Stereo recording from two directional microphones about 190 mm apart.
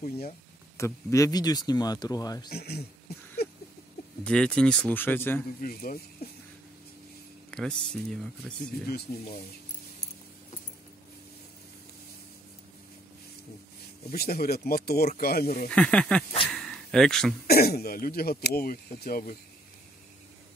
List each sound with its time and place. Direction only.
0.7 s speech: 15° left (ahead or behind)
2.5 s speech: 55° left (ahead or behind)
4.2 s speech: 5° left (ahead or behind)
5.6 s speech: 50° left (ahead or behind)
7.5 s speech: 5° left (ahead or behind)
8.9 s speech: 55° left (ahead or behind)
14.1 s speech: 55° left (ahead or behind)
15.7 s speech: 5° left (ahead or behind)
16.4 s a sound: centre (ahead or behind)
17.5 s speech: 55° left (ahead or behind)